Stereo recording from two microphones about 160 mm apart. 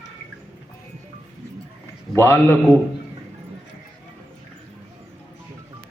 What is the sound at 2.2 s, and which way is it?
Speech, 15° left (ahead or behind).